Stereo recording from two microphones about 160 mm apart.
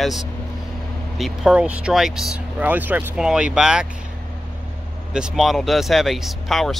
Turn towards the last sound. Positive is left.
turn(degrees=0)  # may be behind; listen again after turning